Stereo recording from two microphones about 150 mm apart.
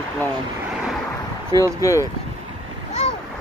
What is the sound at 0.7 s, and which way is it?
Vehicle, 5° right (ahead or behind).